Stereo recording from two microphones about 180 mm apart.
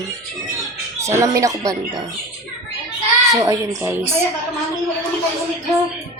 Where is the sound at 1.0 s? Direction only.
15° right (ahead or behind).